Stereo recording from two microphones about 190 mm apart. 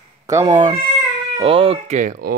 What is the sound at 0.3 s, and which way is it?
Speech, 20° right (ahead or behind).